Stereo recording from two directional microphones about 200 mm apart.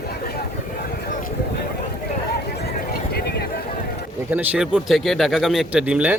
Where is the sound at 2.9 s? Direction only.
50° left (ahead or behind).